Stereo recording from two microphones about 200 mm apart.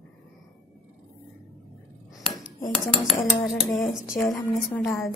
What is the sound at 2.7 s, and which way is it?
A woman's voice, centre (ahead or behind).